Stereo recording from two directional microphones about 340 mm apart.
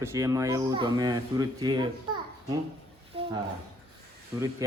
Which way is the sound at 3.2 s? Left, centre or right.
Centre.